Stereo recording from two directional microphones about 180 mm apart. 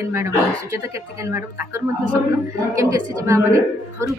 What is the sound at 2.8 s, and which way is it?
A woman's voice, 15° right (ahead or behind).